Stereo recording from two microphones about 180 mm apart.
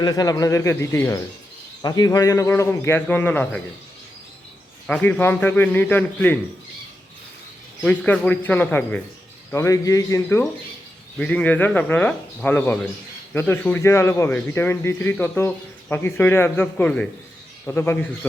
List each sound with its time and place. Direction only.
0.0 s a man's voice: 20° left (ahead or behind)
4.9 s a man's voice: 5° left (ahead or behind)
7.9 s a man's voice: 10° left (ahead or behind)